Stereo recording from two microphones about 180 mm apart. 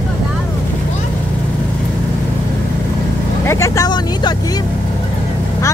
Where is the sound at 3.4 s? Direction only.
15° left (ahead or behind).